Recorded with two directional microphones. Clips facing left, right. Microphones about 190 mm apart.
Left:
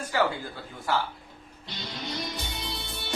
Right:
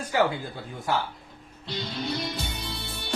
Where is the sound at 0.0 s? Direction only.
15° right (ahead or behind).